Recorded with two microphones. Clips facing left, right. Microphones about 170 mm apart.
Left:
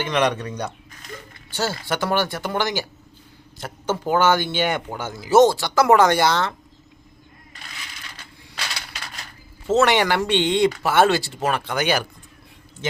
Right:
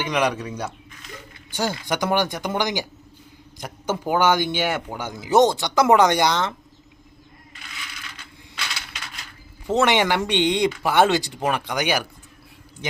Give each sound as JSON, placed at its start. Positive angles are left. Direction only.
{"t": 0.0, "sound": "speech", "side_deg": -10}
{"t": 9.6, "sound": "speech", "side_deg": -15}